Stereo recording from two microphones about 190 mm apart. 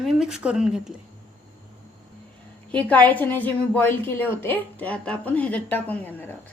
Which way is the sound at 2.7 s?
5° left (ahead or behind).